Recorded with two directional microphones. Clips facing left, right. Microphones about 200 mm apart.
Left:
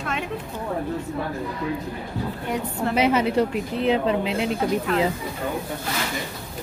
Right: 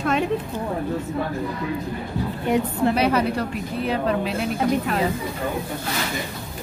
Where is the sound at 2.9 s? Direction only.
20° left (ahead or behind).